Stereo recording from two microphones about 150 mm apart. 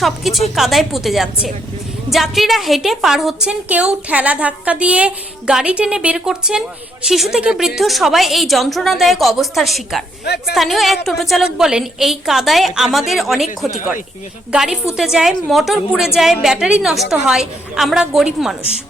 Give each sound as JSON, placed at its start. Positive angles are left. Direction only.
{"t": 0.0, "sound": "a woman's voice", "side_deg": 0}
{"t": 10.2, "sound": "speech", "side_deg": 90}
{"t": 10.5, "sound": "a woman's voice", "side_deg": 0}